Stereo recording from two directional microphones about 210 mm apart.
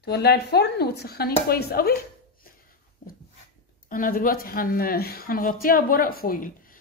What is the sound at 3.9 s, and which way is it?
Speech, 40° left (ahead or behind).